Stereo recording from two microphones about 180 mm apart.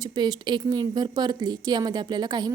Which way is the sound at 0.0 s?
25° right (ahead or behind).